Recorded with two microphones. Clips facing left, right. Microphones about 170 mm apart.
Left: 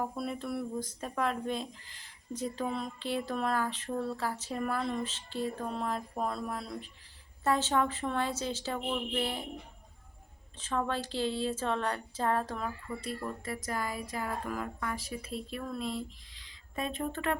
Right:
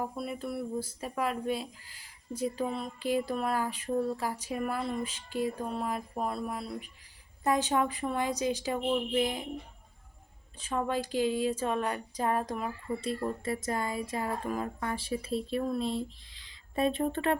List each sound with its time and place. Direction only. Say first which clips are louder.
0.0 s speech: even; 5° right (ahead or behind)
10.6 s speech: right 2 dB; 10° right (ahead or behind); by 17.3 s 30° right (ahead or behind)